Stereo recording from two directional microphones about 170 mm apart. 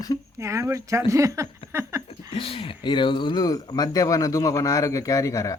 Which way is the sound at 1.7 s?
15° right (ahead or behind).